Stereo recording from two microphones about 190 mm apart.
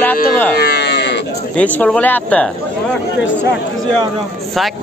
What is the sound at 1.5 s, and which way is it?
Speech, 5° left (ahead or behind).